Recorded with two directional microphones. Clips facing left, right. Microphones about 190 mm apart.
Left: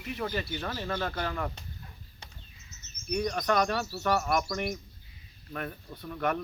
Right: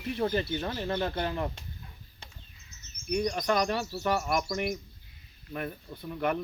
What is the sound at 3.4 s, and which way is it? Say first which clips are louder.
Speech: even; 10° right (ahead or behind).